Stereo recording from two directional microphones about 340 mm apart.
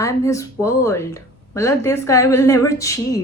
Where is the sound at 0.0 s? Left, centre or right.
Centre.